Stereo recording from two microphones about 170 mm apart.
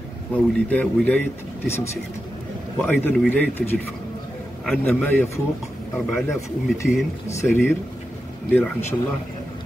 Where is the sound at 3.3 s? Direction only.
10° left (ahead or behind).